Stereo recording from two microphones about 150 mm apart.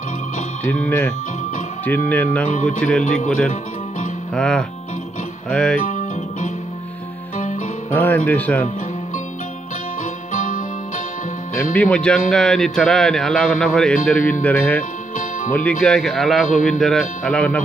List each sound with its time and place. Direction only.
0.7 s speech: 10° left (ahead or behind)
4.3 s speech: 5° left (ahead or behind)
5.9 s music: 55° left (ahead or behind)
7.9 s speech: 15° left (ahead or behind)
10.3 s music: 60° left (ahead or behind)
11.5 s speech: 10° left (ahead or behind)
15.8 s speech: centre (ahead or behind)